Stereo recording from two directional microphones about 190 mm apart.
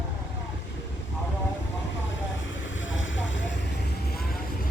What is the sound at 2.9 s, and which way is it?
Vehicle, 90° left.